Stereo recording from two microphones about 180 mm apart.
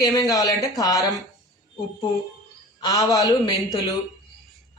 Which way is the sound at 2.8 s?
20° left (ahead or behind).